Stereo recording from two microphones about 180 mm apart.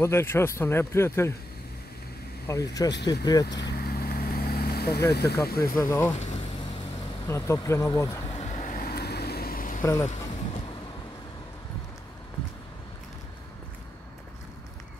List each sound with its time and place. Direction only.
0.0 s a man's voice: 15° left (ahead or behind)
2.4 s speech: 20° left (ahead or behind)
3.6 s vehicle: 60° left (ahead or behind)
5.1 s speech: 65° left (ahead or behind)
5.8 s speech: 20° left (ahead or behind)
6.1 s vehicle: 40° left (ahead or behind)
7.2 s a man's voice: 15° left (ahead or behind)
8.3 s vehicle: 40° left (ahead or behind)
9.8 s speech: 15° left (ahead or behind)
10.0 s vehicle: 40° left (ahead or behind)